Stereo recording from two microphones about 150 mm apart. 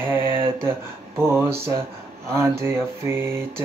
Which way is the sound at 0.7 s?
15° right (ahead or behind).